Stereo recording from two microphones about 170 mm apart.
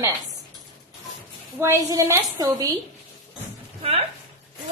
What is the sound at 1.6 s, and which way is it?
A woman's voice, 20° right (ahead or behind).